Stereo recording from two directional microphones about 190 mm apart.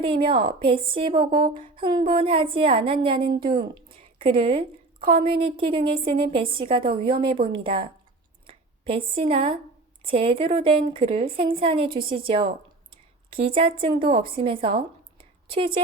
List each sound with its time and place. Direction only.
0.0 s a woman's voice: 25° right (ahead or behind)
4.9 s a woman's voice: 50° right (ahead or behind)
5.5 s a woman's voice: 25° right (ahead or behind)